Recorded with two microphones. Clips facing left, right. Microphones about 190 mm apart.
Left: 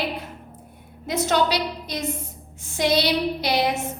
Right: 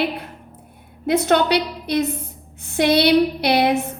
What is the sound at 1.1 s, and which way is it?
A woman's voice, 60° right (ahead or behind).